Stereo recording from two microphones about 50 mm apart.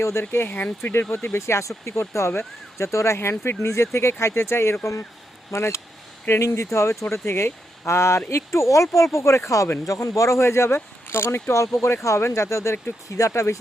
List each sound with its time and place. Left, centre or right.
0.0 s speech: left
0.3 s speech: left
2.7 s speech: left
3.2 s speech: left
7.0 s speech: left
8.7 s speech: left
11.6 s speech: left